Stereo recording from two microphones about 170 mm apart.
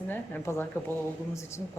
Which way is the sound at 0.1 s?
15° left (ahead or behind).